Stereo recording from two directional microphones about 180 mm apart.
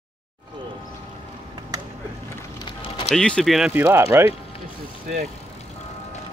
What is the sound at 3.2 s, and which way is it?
Speech, 5° left (ahead or behind).